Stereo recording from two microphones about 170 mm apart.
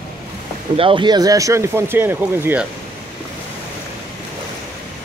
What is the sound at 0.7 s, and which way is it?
Speech, 30° right (ahead or behind).